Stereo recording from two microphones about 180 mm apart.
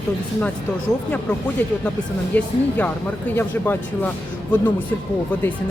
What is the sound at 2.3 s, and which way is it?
Speech, 10° left (ahead or behind).